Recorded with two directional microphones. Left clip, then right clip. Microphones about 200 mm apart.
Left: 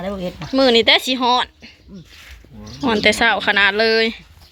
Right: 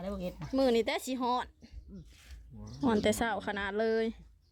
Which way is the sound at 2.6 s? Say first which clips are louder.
Left 14 dB; 25° right (ahead or behind).